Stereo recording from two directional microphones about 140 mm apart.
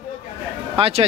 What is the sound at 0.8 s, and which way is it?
Speech, 45° right (ahead or behind).